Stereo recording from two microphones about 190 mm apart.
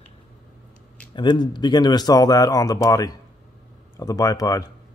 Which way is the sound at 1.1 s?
25° left (ahead or behind).